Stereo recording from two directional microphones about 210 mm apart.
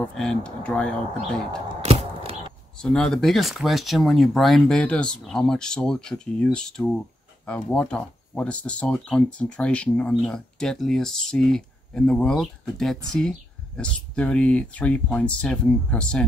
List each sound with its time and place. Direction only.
0.0 s speech: 5° left (ahead or behind)
1.8 s a sound: 30° right (ahead or behind)
2.8 s speech: 5° left (ahead or behind)